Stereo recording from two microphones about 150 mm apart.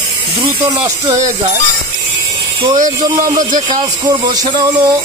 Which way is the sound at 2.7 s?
60° right (ahead or behind).